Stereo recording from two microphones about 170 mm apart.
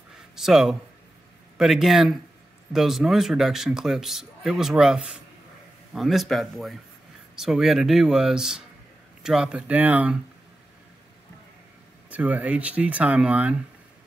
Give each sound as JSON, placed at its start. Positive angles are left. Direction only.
{"t": 0.4, "sound": "speech", "side_deg": 0}
{"t": 12.1, "sound": "speech", "side_deg": -10}